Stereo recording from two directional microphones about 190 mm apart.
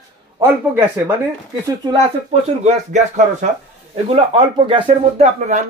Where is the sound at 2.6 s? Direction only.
40° right (ahead or behind).